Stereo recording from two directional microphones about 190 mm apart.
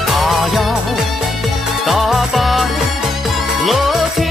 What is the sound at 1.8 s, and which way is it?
Music, centre (ahead or behind).